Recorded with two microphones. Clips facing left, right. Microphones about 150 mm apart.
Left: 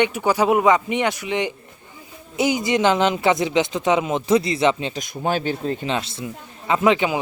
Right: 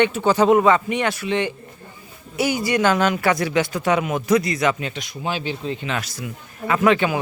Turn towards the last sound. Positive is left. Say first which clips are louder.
# even
turn(degrees=20)  # may be behind; listen again after turning